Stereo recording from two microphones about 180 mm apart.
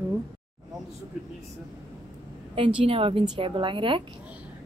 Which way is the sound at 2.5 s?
30° right (ahead or behind).